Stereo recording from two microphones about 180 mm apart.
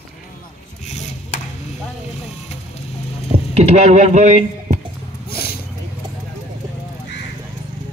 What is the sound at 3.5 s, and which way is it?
Speech, 35° right (ahead or behind).